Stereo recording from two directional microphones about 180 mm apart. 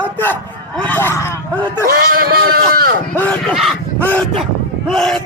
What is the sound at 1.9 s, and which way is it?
Speech, 55° right (ahead or behind).